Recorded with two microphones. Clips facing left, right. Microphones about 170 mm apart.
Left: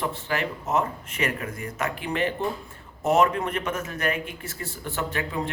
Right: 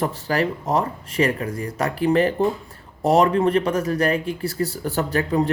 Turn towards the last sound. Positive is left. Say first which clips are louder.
# right 8 dB
turn(degrees=-35)  # may be behind; listen again after turning